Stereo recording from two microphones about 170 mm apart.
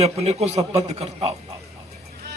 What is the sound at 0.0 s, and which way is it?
A man's voice, 40° right (ahead or behind).